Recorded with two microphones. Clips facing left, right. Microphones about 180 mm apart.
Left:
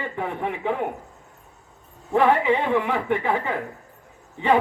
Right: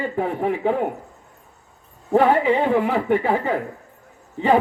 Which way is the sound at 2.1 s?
40° right (ahead or behind).